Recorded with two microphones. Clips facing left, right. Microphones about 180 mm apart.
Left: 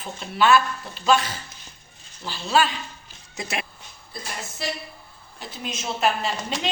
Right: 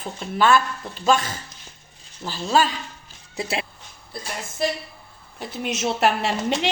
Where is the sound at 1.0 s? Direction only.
45° right (ahead or behind).